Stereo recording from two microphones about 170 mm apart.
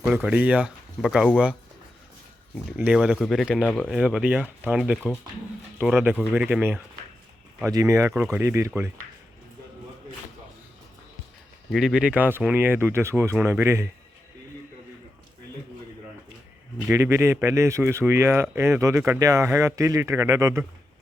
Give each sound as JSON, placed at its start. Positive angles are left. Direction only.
{"t": 0.0, "sound": "a man's voice", "side_deg": -10}
{"t": 2.7, "sound": "speech", "side_deg": -5}
{"t": 4.0, "sound": "a man's voice", "side_deg": -10}
{"t": 11.7, "sound": "a man's voice", "side_deg": 0}
{"t": 16.8, "sound": "a man's voice", "side_deg": -15}